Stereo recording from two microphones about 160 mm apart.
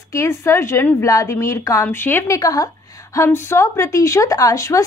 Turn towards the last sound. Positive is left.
turn(degrees=20)  # may be behind; listen again after turning